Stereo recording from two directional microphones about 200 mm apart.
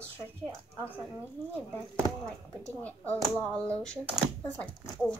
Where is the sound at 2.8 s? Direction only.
5° left (ahead or behind).